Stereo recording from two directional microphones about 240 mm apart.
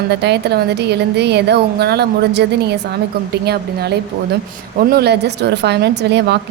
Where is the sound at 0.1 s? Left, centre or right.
Right.